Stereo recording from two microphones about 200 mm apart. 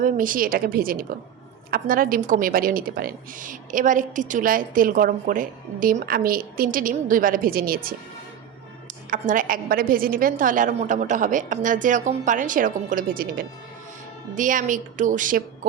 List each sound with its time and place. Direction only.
0.0 s a woman's voice: 45° right (ahead or behind)
9.0 s a woman's voice: 40° right (ahead or behind)